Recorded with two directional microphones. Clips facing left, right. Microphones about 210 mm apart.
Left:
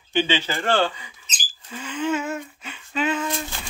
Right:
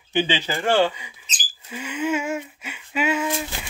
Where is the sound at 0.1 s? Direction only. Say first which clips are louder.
Even; 15° right (ahead or behind).